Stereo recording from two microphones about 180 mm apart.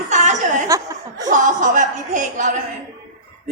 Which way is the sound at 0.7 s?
20° right (ahead or behind).